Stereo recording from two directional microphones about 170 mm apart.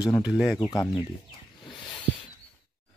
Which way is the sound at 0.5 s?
25° left (ahead or behind).